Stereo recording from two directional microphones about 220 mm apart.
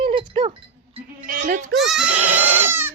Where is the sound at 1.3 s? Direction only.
40° right (ahead or behind).